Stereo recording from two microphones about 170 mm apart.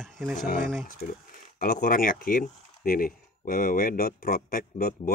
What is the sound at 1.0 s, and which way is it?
Speech, 60° left (ahead or behind).